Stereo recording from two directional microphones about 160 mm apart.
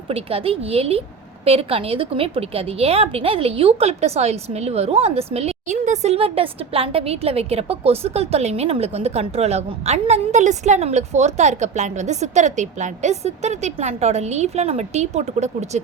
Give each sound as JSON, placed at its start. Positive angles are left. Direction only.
{"t": 0.1, "sound": "a woman's voice", "side_deg": -35}